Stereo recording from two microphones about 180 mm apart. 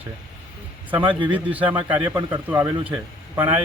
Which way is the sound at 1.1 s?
25° right (ahead or behind).